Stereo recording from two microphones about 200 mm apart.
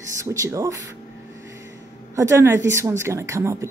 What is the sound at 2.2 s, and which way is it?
Speech, 15° right (ahead or behind).